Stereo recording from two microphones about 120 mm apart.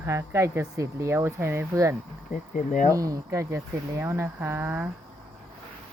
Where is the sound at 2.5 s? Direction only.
90° left.